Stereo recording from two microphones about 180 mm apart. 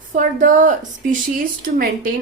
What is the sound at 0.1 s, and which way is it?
Speech, 45° right (ahead or behind).